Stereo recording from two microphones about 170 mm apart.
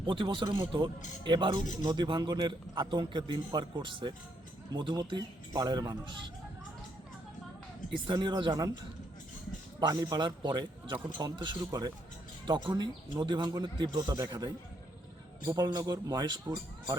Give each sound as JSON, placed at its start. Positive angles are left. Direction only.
{"t": 0.0, "sound": "a man's voice", "side_deg": -30}
{"t": 7.9, "sound": "a man's voice", "side_deg": -30}
{"t": 9.8, "sound": "a man's voice", "side_deg": -25}